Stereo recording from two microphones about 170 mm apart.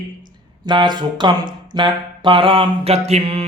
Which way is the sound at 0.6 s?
25° right (ahead or behind).